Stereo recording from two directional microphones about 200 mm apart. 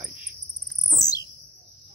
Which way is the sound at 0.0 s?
5° right (ahead or behind).